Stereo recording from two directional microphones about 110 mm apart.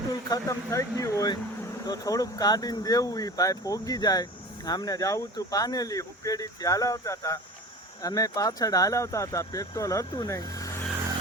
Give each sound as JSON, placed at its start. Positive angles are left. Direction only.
{"t": 0.3, "sound": "speech", "side_deg": 30}